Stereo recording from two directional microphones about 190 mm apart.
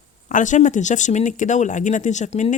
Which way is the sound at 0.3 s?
40° left (ahead or behind).